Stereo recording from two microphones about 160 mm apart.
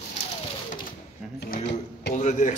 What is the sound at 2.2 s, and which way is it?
Speech, 50° left (ahead or behind).